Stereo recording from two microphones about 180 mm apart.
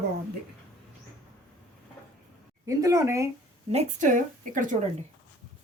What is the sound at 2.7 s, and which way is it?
Speech, 20° right (ahead or behind).